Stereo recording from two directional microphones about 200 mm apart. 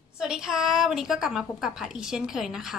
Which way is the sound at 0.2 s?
5° right (ahead or behind).